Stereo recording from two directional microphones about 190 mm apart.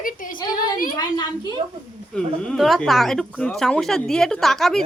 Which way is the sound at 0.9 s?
20° left (ahead or behind).